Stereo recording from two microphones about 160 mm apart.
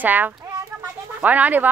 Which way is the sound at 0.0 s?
10° right (ahead or behind).